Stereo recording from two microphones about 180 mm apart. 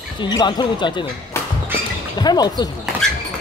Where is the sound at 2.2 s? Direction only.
25° left (ahead or behind).